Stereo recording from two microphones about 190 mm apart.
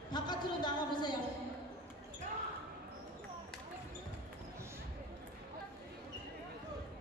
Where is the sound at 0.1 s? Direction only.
20° left (ahead or behind).